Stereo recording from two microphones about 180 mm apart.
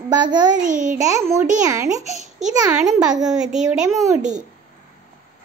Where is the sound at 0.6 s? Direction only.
45° right (ahead or behind).